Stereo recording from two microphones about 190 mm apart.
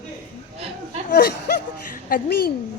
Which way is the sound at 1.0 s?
55° left (ahead or behind).